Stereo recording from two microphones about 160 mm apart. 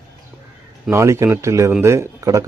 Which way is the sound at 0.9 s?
15° right (ahead or behind).